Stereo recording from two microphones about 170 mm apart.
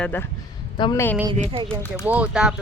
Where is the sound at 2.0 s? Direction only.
5° right (ahead or behind).